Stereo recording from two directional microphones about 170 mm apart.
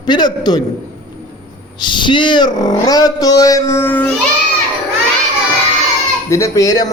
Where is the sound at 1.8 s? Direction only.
25° left (ahead or behind); by 4.1 s 10° left (ahead or behind).